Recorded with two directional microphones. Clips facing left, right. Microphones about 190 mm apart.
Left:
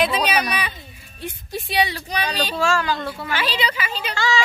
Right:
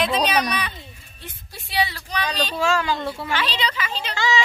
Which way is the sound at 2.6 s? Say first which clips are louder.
Even; 20° right (ahead or behind).